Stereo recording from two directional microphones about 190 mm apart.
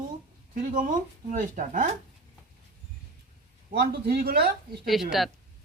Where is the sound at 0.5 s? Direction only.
45° right (ahead or behind).